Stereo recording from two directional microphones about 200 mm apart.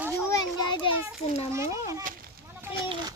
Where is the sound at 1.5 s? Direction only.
15° right (ahead or behind).